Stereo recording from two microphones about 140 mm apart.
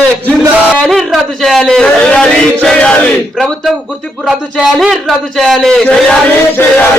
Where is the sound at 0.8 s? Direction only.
5° left (ahead or behind).